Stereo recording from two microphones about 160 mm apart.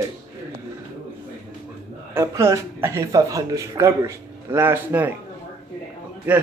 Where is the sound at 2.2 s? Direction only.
20° right (ahead or behind).